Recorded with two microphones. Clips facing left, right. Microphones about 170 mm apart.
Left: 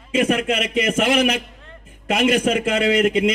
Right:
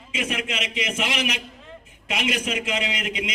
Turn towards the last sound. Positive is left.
turn(degrees=50)  # may be behind; listen again after turning